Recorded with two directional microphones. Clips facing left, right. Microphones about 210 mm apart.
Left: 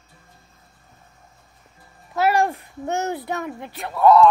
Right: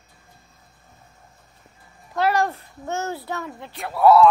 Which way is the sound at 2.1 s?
10° left (ahead or behind).